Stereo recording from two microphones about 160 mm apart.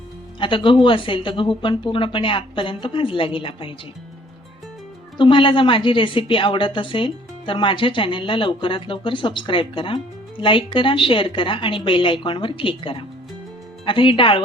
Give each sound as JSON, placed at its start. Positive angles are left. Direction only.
{"t": 0.3, "sound": "a woman's voice", "side_deg": 30}
{"t": 5.1, "sound": "a woman's voice", "side_deg": 30}